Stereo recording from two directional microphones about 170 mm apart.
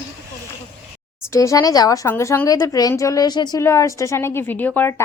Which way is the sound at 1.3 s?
20° left (ahead or behind).